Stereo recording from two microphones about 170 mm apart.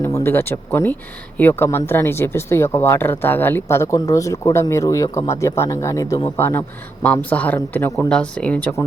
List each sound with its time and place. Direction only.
0.0 s speech: 15° left (ahead or behind)